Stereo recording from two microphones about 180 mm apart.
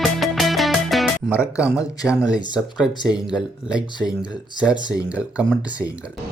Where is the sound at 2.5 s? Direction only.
5° right (ahead or behind).